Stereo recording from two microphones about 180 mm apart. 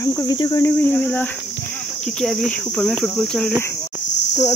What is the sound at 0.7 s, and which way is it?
Speech, 10° left (ahead or behind).